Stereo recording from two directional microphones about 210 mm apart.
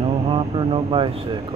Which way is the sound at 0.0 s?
25° right (ahead or behind).